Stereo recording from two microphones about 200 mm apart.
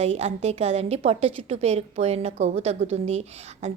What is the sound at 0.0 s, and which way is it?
A woman's voice, 30° right (ahead or behind).